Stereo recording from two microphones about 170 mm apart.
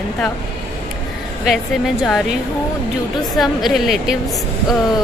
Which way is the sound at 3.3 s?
Centre (ahead or behind).